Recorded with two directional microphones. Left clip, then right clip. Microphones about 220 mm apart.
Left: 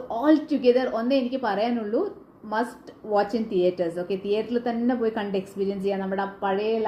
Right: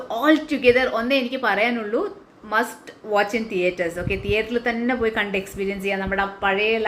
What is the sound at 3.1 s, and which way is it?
Speech, 40° right (ahead or behind).